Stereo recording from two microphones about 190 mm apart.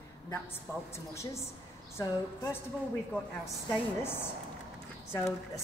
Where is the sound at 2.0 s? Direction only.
20° left (ahead or behind).